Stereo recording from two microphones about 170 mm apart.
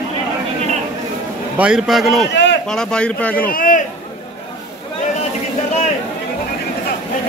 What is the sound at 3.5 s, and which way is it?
Speech, 50° left (ahead or behind).